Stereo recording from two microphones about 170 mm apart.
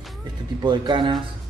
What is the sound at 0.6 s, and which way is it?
Speech, 25° right (ahead or behind).